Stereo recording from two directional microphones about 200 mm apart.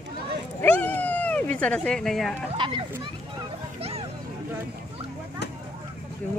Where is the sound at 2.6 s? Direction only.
25° right (ahead or behind).